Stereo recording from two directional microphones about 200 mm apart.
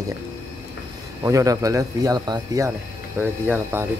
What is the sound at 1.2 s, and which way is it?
Speech, 15° right (ahead or behind).